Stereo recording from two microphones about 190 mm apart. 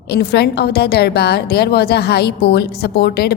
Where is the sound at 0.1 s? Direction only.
60° left (ahead or behind).